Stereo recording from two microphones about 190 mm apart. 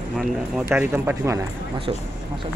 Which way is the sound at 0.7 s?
10° right (ahead or behind).